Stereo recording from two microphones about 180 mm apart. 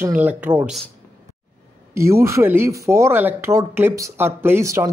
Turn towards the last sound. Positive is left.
turn(degrees=-15)  # may be behind; listen again after turning